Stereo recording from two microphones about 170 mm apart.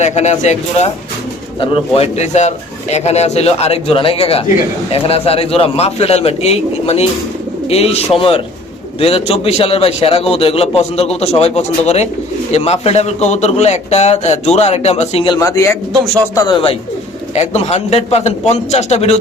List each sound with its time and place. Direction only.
0.0 s a man's voice: 40° left (ahead or behind)
1.5 s a man's voice: 30° left (ahead or behind)
15.4 s a man's voice: 15° left (ahead or behind)
16.3 s speech: 30° left (ahead or behind)
17.3 s a man's voice: 40° left (ahead or behind)